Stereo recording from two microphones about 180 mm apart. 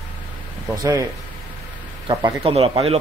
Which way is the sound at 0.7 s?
20° right (ahead or behind).